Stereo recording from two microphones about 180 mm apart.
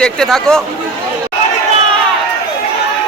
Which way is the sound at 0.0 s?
5° left (ahead or behind).